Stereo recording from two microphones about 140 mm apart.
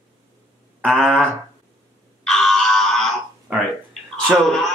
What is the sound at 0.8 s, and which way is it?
Speech, centre (ahead or behind).